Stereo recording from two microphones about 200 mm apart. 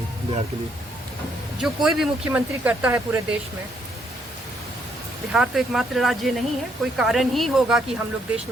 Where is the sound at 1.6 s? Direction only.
Centre (ahead or behind).